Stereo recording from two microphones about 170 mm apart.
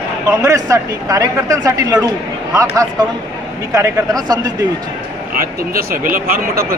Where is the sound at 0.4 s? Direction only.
20° right (ahead or behind).